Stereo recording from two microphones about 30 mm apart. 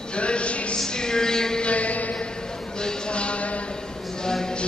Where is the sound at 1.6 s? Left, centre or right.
Left.